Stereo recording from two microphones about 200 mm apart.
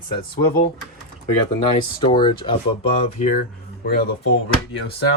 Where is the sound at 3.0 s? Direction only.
40° left (ahead or behind).